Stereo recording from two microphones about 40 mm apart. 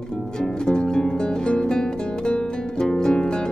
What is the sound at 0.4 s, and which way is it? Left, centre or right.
Music, centre.